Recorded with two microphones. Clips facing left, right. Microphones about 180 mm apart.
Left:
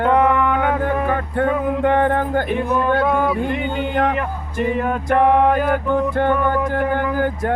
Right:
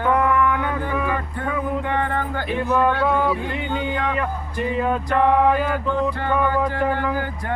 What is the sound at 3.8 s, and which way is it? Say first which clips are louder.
A man's voice: left 5 dB; 55° left (ahead or behind).